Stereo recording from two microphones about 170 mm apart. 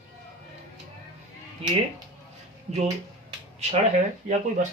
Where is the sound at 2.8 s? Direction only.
30° right (ahead or behind).